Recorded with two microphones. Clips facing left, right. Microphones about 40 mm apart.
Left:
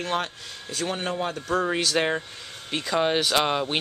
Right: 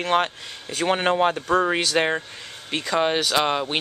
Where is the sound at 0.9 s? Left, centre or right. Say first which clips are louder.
Right 10 dB; right.